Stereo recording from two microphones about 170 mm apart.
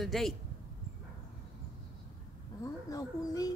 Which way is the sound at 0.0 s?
Centre (ahead or behind).